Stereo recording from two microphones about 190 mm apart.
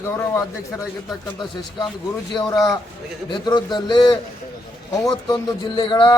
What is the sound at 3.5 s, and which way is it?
Speech, 20° left (ahead or behind).